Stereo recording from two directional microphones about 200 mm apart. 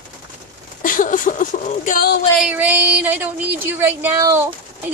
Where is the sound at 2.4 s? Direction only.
10° right (ahead or behind).